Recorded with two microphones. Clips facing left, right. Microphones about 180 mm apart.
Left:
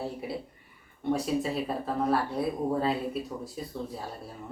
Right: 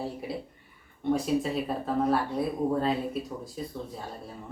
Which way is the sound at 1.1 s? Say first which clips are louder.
Right 2 dB; centre (ahead or behind).